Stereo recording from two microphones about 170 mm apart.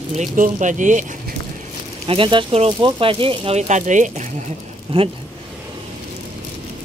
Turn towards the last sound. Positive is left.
turn(degrees=-30)  # may be behind; listen again after turning